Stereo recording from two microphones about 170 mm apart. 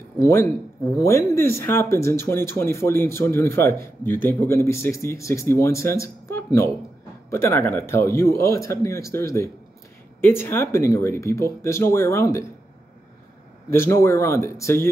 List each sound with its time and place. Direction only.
0.2 s speech: 15° left (ahead or behind)
13.7 s speech: 15° left (ahead or behind)